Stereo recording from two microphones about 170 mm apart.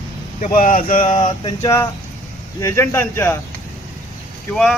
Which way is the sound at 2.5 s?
15° left (ahead or behind).